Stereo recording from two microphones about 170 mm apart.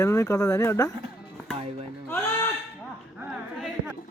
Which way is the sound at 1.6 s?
35° right (ahead or behind).